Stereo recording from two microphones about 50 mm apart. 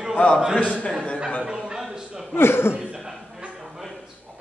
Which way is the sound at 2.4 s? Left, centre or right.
Left.